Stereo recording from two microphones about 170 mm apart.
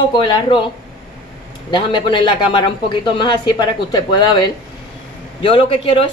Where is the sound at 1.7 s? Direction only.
30° left (ahead or behind).